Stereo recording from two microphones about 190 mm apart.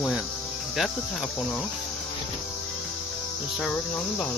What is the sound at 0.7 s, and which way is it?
Speech, centre (ahead or behind).